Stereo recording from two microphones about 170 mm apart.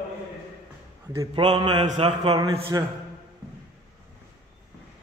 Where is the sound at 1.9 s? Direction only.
40° right (ahead or behind).